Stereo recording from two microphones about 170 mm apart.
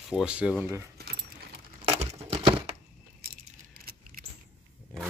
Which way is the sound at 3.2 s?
60° right (ahead or behind).